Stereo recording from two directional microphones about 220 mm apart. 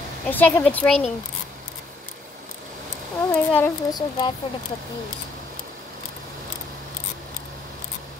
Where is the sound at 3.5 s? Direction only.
15° left (ahead or behind).